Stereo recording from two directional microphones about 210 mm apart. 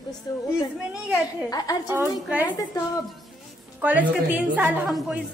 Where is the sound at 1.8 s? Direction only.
10° right (ahead or behind).